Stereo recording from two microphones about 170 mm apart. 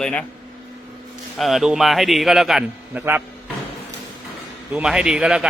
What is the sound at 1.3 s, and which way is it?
Speech, centre (ahead or behind).